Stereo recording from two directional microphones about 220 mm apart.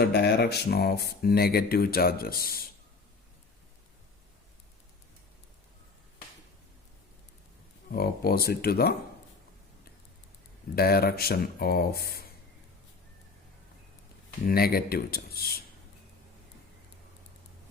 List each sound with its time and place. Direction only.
0.0 s speech: 45° left (ahead or behind)
7.9 s speech: 45° left (ahead or behind)
10.8 s speech: 45° left (ahead or behind)
14.4 s speech: 45° left (ahead or behind)